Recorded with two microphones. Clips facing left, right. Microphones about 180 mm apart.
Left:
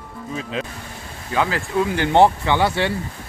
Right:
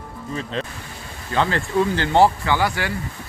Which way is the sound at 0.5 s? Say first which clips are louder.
Left 1 dB; 5° left (ahead or behind).